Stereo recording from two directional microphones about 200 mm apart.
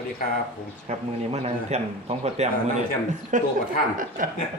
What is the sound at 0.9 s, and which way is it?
Speech, 30° right (ahead or behind).